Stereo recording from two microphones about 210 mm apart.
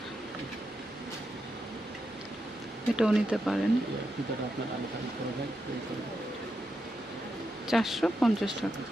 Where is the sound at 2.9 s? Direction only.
5° right (ahead or behind).